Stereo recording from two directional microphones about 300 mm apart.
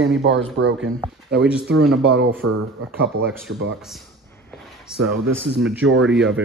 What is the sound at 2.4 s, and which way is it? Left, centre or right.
Speech, right.